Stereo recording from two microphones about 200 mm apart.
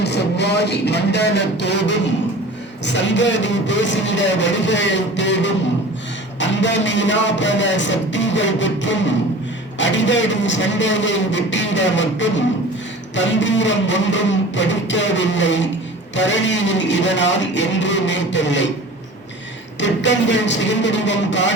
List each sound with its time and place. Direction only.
0.0 s speech: 55° left (ahead or behind)
19.8 s speech: 65° left (ahead or behind)